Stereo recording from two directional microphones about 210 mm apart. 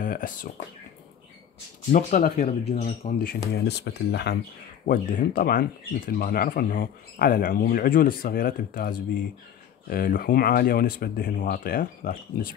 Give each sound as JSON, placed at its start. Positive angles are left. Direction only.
{"t": 0.0, "sound": "speech", "side_deg": 40}
{"t": 1.9, "sound": "speech", "side_deg": 35}
{"t": 3.5, "sound": "speech", "side_deg": 50}